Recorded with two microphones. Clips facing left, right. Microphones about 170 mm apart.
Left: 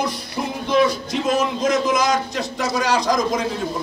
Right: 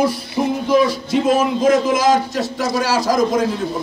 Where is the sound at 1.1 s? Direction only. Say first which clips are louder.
Right 5 dB; 5° right (ahead or behind).